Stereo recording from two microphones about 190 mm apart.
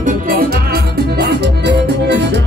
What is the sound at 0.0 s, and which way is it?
Music, 50° right (ahead or behind).